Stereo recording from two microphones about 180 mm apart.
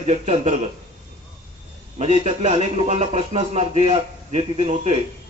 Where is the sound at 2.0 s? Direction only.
35° right (ahead or behind).